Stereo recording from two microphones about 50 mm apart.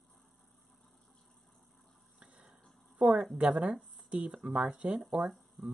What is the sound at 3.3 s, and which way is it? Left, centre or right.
Speech, right.